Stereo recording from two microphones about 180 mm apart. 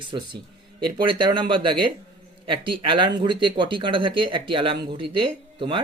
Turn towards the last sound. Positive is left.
turn(degrees=-25)  # may be behind; listen again after turning